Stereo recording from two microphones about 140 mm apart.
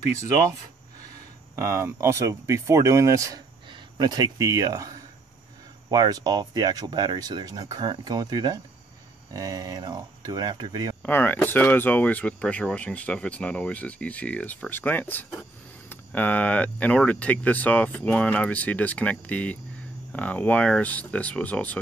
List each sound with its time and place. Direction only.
1.5 s speech: 20° right (ahead or behind)
11.0 s speech: 15° left (ahead or behind)